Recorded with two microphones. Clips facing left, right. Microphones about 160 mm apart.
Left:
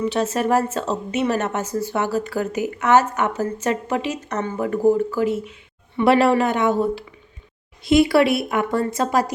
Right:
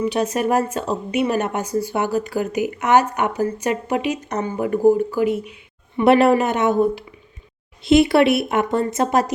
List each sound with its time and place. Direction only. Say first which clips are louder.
0.0 s a woman's voice: right 1 dB; 15° right (ahead or behind)